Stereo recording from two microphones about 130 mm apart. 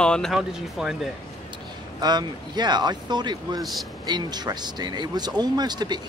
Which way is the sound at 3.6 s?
Centre (ahead or behind).